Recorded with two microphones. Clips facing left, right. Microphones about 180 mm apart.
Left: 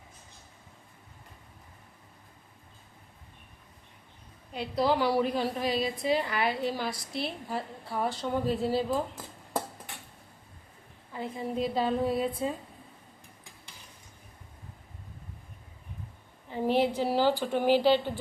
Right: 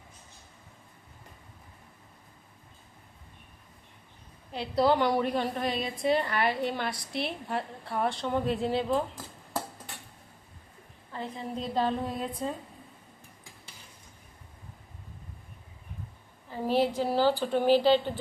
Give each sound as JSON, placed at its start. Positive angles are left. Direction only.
{"t": 4.5, "sound": "a woman's voice", "side_deg": 0}
{"t": 11.1, "sound": "a woman's voice", "side_deg": 10}
{"t": 16.5, "sound": "a sound", "side_deg": 15}
{"t": 17.0, "sound": "a woman's voice", "side_deg": 15}